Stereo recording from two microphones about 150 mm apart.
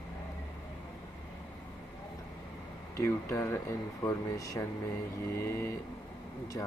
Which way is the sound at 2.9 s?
20° left (ahead or behind).